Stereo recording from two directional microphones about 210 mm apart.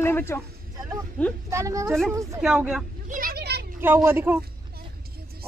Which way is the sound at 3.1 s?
45° right (ahead or behind).